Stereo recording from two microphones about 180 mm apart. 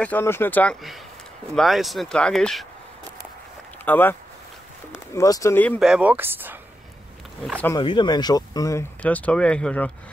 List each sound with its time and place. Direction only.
0.0 s speech: 10° left (ahead or behind)
3.8 s speech: 10° left (ahead or behind)
5.8 s speech: 5° right (ahead or behind)
7.4 s speech: 5° left (ahead or behind)
7.7 s speech: 25° left (ahead or behind)
9.0 s speech: 5° left (ahead or behind)